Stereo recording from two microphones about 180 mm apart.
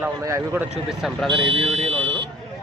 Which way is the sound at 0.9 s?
Centre (ahead or behind).